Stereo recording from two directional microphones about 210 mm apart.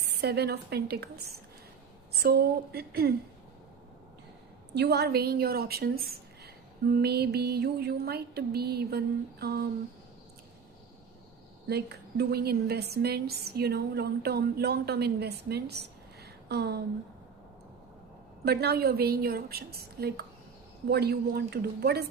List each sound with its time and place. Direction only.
0.0 s a woman's voice: 50° right (ahead or behind)
2.2 s a woman's voice: 50° right (ahead or behind)
4.7 s a woman's voice: 55° right (ahead or behind)
11.7 s a woman's voice: 50° right (ahead or behind)
18.4 s a woman's voice: 50° right (ahead or behind)